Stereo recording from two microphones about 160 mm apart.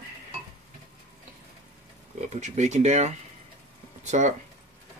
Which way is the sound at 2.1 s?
45° right (ahead or behind).